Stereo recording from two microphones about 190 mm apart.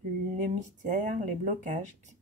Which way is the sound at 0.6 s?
40° right (ahead or behind).